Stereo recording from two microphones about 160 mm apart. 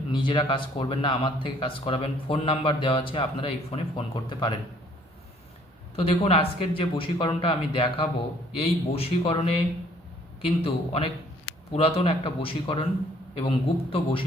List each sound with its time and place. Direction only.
0.1 s speech: 30° left (ahead or behind)
6.0 s speech: 35° left (ahead or behind)